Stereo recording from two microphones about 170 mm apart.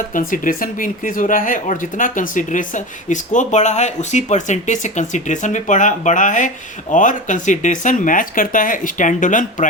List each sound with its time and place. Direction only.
0.1 s speech: 55° left (ahead or behind)